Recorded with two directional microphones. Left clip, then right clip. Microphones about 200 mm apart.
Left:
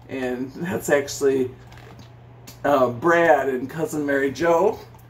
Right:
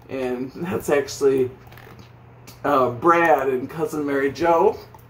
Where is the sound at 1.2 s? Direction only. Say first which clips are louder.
Right 4 dB; 15° left (ahead or behind).